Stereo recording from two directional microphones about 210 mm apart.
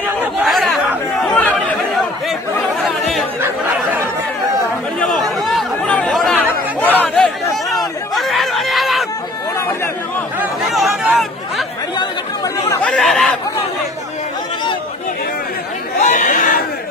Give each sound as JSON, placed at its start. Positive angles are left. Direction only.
{"t": 0.2, "sound": "chatter", "side_deg": 0}
{"t": 3.4, "sound": "a sound", "side_deg": -10}
{"t": 5.0, "sound": "chatter", "side_deg": 0}
{"t": 8.1, "sound": "a sound", "side_deg": 0}
{"t": 10.4, "sound": "chatter", "side_deg": -5}
{"t": 12.8, "sound": "chatter", "side_deg": 5}
{"t": 16.0, "sound": "chatter", "side_deg": 35}